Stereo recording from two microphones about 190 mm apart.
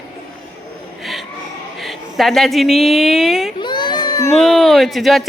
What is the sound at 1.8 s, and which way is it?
A woman's voice, centre (ahead or behind).